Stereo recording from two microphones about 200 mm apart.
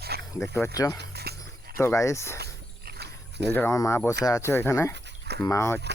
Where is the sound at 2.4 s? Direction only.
55° right (ahead or behind).